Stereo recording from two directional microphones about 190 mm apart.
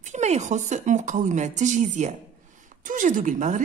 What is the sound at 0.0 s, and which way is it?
A woman's voice, 35° right (ahead or behind).